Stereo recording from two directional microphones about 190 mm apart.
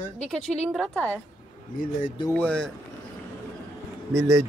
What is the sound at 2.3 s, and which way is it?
Speech, 5° left (ahead or behind).